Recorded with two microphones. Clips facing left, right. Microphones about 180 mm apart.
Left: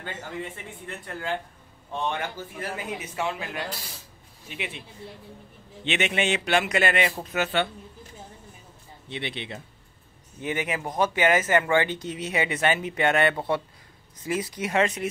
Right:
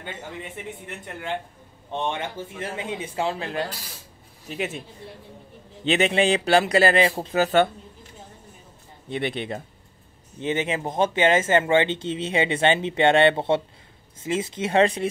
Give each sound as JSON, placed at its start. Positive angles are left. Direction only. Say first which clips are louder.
{"t": 0.0, "sound": "speech", "louder": "left 1 dB", "side_deg": -20}
{"t": 4.5, "sound": "speech", "louder": "right 7 dB", "side_deg": -45}
{"t": 5.9, "sound": "a man's voice", "louder": "right 6 dB", "side_deg": -35}
{"t": 9.1, "sound": "speech", "louder": "right 7 dB", "side_deg": -50}
{"t": 10.4, "sound": "speech", "louder": "right 4 dB", "side_deg": -25}